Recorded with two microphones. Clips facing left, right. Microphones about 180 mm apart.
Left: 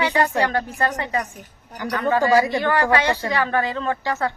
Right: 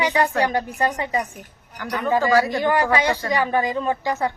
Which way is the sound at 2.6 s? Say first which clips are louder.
Even; 15° right (ahead or behind).